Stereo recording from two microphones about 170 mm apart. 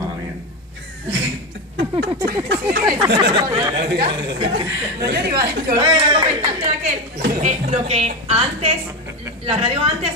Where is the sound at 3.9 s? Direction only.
70° right (ahead or behind).